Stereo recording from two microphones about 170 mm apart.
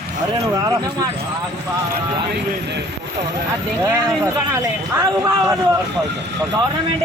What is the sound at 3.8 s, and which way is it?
A man's voice, 15° right (ahead or behind).